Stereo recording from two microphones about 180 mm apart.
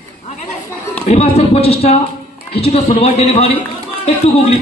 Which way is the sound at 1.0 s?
35° left (ahead or behind).